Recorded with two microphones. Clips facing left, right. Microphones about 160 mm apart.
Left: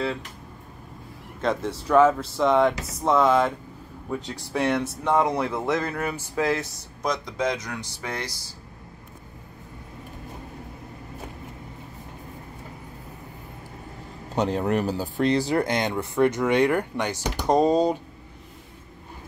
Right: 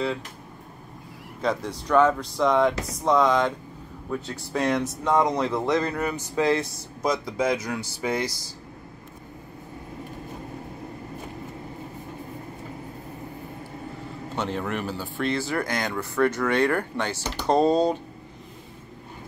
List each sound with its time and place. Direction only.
1.4 s speech: centre (ahead or behind)
14.3 s speech: 35° left (ahead or behind); by 17.9 s 10° left (ahead or behind)